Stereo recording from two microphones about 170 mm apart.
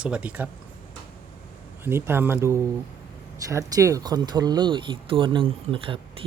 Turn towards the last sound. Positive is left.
turn(degrees=-30)  # may be behind; listen again after turning